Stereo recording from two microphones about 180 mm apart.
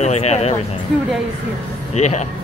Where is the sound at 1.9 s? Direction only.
40° left (ahead or behind).